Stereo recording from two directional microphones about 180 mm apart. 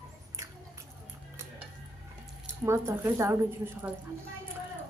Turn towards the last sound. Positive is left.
turn(degrees=-15)  # may be behind; listen again after turning